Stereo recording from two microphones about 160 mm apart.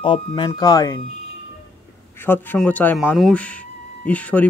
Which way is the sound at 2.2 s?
10° left (ahead or behind).